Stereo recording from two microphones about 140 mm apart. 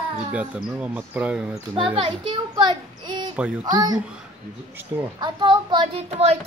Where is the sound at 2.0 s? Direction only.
35° right (ahead or behind).